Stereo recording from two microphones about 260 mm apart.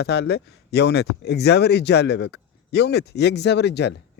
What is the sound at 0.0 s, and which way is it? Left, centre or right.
Speech, left.